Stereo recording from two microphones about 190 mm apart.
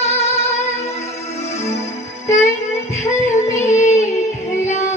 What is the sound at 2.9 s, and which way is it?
Music, 40° left (ahead or behind).